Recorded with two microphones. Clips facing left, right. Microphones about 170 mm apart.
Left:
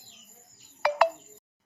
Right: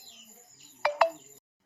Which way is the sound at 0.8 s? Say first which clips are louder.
Left 2 dB; 65° left (ahead or behind).